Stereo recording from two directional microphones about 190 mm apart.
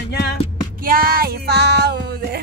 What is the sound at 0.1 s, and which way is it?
Music, 60° left (ahead or behind).